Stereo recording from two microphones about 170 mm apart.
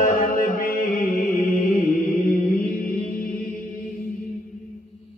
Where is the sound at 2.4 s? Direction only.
55° left (ahead or behind).